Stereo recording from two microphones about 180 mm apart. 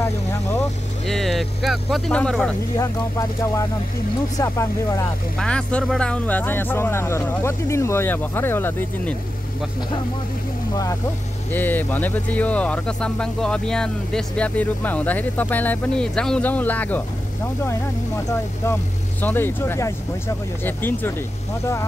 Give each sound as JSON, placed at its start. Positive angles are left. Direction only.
{"t": 0.0, "sound": "vehicle", "side_deg": 15}
{"t": 1.0, "sound": "speech", "side_deg": 0}
{"t": 2.8, "sound": "speech", "side_deg": 15}
{"t": 5.4, "sound": "speech", "side_deg": 5}
{"t": 10.7, "sound": "speech", "side_deg": 20}
{"t": 19.2, "sound": "speech", "side_deg": 10}